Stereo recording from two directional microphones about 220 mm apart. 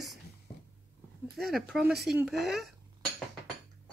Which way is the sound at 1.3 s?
Centre (ahead or behind).